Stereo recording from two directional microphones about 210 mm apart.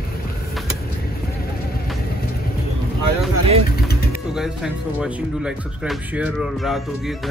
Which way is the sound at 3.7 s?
50° left (ahead or behind).